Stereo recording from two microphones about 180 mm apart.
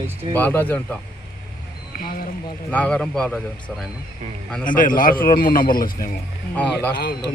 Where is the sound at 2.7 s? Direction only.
5° left (ahead or behind).